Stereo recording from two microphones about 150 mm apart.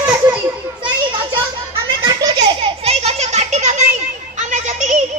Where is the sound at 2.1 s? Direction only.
30° right (ahead or behind).